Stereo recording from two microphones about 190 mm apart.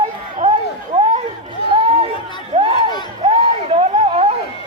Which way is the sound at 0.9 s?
30° right (ahead or behind).